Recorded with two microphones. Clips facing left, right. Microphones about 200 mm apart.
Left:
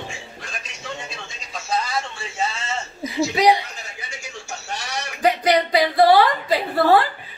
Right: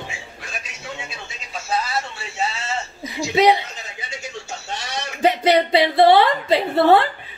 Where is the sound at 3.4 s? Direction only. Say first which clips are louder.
Right 2 dB; 25° right (ahead or behind).